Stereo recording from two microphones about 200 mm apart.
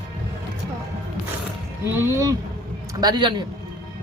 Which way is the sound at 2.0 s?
15° right (ahead or behind).